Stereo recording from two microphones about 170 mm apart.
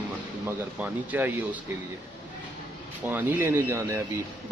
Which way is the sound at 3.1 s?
15° right (ahead or behind).